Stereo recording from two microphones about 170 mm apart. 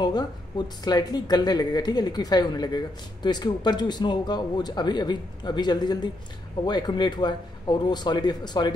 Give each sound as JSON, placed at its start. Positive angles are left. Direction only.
{"t": 0.0, "sound": "speech", "side_deg": 25}